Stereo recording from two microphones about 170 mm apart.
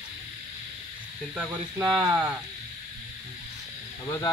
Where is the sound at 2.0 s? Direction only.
10° right (ahead or behind).